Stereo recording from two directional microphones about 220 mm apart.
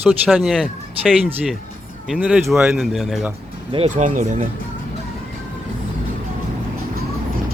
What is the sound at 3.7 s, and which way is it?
Speech, 30° right (ahead or behind).